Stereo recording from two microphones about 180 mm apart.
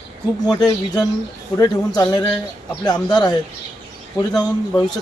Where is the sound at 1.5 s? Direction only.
20° left (ahead or behind).